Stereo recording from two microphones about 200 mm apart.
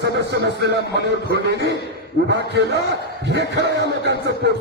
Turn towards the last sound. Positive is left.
turn(degrees=-60)  # may be behind; listen again after turning